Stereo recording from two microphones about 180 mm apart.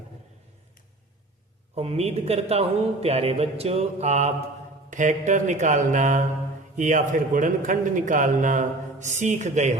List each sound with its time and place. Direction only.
1.7 s a man's voice: 35° right (ahead or behind)